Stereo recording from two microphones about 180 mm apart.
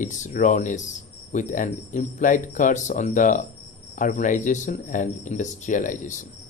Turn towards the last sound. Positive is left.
turn(degrees=45)  # may be behind; listen again after turning